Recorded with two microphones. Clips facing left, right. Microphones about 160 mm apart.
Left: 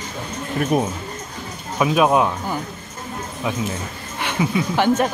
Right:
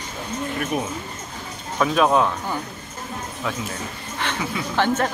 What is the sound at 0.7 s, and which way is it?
Speech, 40° left (ahead or behind).